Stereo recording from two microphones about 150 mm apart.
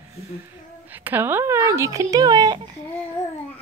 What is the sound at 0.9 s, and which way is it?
Speech, 10° right (ahead or behind).